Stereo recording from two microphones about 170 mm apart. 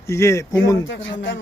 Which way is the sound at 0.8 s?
90° left.